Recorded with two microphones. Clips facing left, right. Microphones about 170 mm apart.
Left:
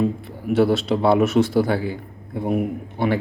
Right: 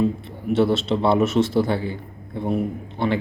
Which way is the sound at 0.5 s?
25° right (ahead or behind).